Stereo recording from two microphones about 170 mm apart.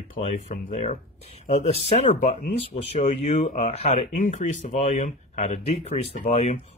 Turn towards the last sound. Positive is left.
turn(degrees=40)  # may be behind; listen again after turning